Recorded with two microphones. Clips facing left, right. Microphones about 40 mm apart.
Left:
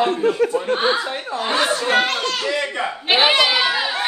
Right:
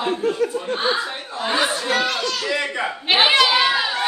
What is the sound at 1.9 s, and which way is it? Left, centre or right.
Speech, left.